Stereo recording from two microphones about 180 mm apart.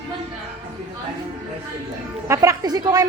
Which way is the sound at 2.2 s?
15° right (ahead or behind).